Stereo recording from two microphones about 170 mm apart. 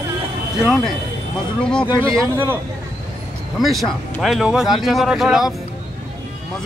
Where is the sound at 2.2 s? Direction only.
15° right (ahead or behind).